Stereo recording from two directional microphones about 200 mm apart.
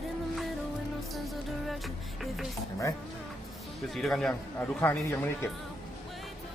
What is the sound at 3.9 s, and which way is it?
A man's voice, centre (ahead or behind).